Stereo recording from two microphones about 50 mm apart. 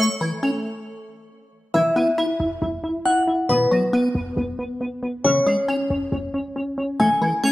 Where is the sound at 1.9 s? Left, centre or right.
Centre.